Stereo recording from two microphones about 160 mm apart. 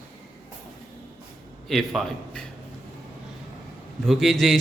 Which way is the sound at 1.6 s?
Centre (ahead or behind).